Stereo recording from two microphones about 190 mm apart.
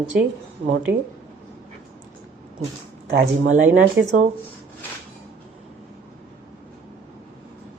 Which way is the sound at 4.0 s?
75° right (ahead or behind).